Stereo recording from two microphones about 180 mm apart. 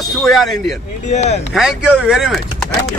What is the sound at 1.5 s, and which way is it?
Speech, 5° right (ahead or behind).